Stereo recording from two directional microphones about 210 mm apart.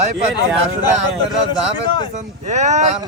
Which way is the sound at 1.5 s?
20° left (ahead or behind).